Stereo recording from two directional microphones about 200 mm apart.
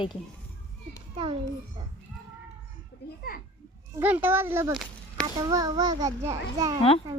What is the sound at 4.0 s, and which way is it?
A child's voice, 10° right (ahead or behind).